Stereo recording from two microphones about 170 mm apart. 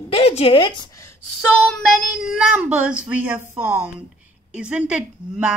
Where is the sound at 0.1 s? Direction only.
35° left (ahead or behind).